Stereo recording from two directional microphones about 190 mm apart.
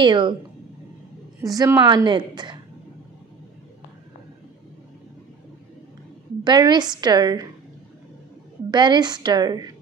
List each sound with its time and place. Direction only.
0.0 s a woman's voice: 25° right (ahead or behind)
1.4 s a woman's voice: 20° right (ahead or behind)
6.4 s a woman's voice: 25° right (ahead or behind)
8.6 s a woman's voice: 25° right (ahead or behind)